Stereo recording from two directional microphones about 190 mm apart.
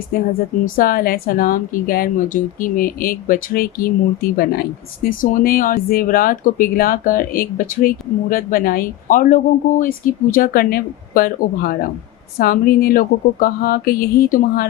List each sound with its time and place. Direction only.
0.1 s speech: 45° left (ahead or behind)